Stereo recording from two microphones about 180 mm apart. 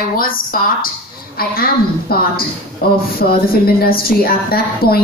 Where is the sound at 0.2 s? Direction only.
55° left (ahead or behind).